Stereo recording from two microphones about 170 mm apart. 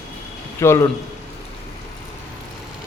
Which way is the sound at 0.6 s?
15° left (ahead or behind).